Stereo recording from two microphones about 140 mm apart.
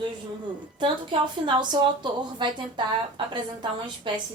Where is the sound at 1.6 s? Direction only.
35° right (ahead or behind).